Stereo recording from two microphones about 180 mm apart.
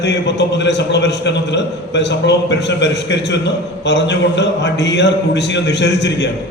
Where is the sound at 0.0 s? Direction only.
70° left (ahead or behind).